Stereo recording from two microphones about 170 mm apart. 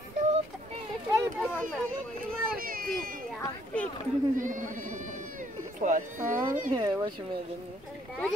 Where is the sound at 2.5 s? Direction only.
55° right (ahead or behind).